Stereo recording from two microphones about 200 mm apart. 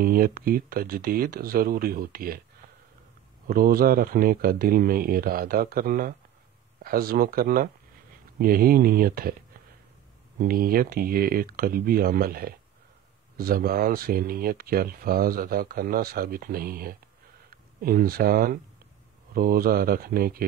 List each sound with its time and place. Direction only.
0.0 s speech: 50° right (ahead or behind)
3.4 s speech: 45° right (ahead or behind)
10.4 s speech: 45° right (ahead or behind)